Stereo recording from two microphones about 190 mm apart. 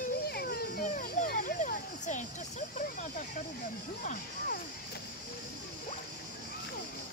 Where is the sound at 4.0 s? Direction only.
45° left (ahead or behind).